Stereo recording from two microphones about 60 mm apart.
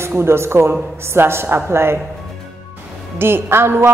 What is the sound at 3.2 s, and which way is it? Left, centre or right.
Speech, right.